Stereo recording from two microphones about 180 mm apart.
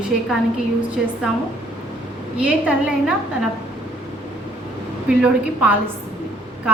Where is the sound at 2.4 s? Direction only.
5° right (ahead or behind).